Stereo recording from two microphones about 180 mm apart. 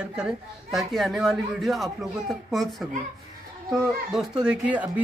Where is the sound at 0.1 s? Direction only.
5° right (ahead or behind).